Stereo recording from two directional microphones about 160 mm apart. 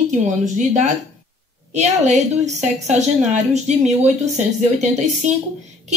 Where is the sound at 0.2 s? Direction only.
50° right (ahead or behind).